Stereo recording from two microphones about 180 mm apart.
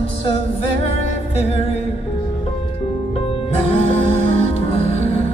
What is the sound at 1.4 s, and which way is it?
Music, 35° left (ahead or behind).